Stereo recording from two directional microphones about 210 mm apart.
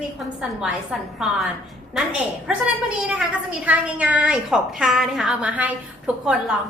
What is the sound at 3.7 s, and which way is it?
A woman's voice, 5° right (ahead or behind).